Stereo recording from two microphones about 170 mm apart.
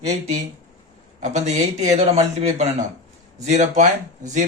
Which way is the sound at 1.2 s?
40° right (ahead or behind).